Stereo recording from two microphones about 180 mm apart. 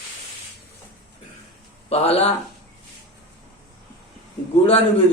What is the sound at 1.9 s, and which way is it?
Speech, 35° left (ahead or behind).